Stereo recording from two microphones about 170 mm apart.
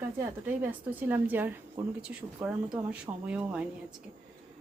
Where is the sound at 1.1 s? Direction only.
10° right (ahead or behind).